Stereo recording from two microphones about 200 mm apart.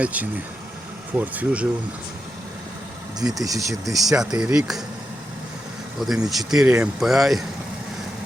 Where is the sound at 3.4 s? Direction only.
15° right (ahead or behind).